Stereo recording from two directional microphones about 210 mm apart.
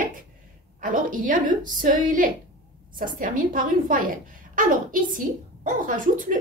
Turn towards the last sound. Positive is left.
turn(degrees=-40)  # may be behind; listen again after turning